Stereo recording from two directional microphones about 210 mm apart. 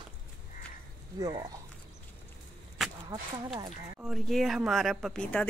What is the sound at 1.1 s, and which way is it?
Speech, 15° right (ahead or behind).